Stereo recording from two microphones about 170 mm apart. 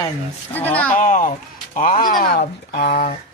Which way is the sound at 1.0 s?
50° left (ahead or behind).